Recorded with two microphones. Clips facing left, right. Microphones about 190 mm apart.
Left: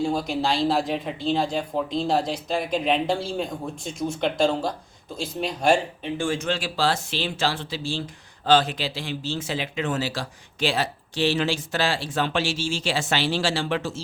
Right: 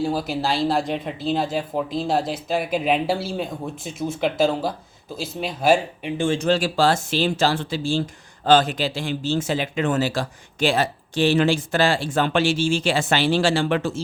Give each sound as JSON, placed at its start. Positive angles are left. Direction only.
{"t": 0.0, "sound": "speech", "side_deg": -5}
{"t": 6.4, "sound": "speech", "side_deg": -40}